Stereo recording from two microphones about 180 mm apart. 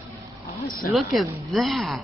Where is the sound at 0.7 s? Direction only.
55° left (ahead or behind).